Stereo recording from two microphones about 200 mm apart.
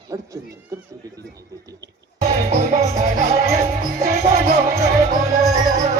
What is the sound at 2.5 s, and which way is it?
Music, 40° right (ahead or behind).